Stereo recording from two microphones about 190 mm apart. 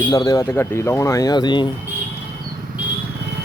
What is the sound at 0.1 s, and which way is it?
Speech, 20° left (ahead or behind).